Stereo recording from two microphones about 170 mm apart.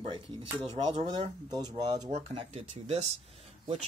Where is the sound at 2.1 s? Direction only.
35° right (ahead or behind).